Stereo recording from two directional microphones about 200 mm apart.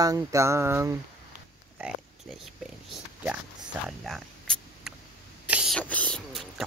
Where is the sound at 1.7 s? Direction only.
Centre (ahead or behind).